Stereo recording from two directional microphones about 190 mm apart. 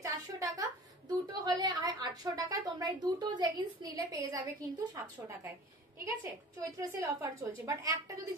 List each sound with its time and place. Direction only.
0.0 s a woman's voice: 15° right (ahead or behind)
6.9 s a woman's voice: 15° right (ahead or behind)